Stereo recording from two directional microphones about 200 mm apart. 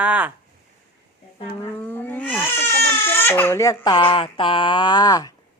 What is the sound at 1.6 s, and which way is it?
Speech, 10° left (ahead or behind).